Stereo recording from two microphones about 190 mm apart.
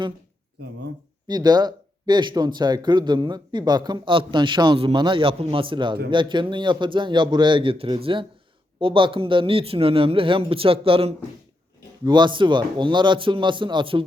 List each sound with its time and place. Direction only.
0.6 s speech: 60° right (ahead or behind)
1.3 s speech: 20° right (ahead or behind)